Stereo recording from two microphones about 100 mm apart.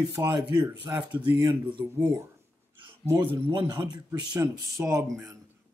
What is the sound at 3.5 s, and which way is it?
Speech, 45° right (ahead or behind).